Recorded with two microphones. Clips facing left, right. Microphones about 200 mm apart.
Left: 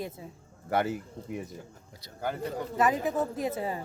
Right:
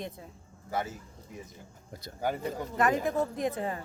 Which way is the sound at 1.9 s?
50° right (ahead or behind).